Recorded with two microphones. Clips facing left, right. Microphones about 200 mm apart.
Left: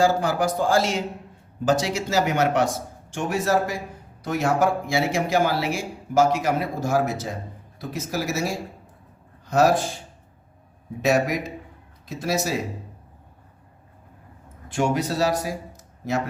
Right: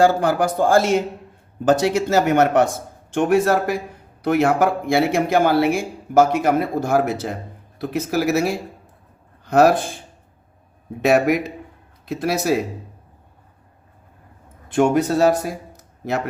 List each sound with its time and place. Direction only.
0.0 s speech: 55° right (ahead or behind)
11.0 s speech: 60° right (ahead or behind)
14.7 s speech: 55° right (ahead or behind)